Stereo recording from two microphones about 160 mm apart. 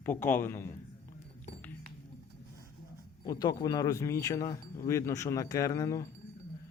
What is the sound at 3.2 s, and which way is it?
Speech, 25° left (ahead or behind).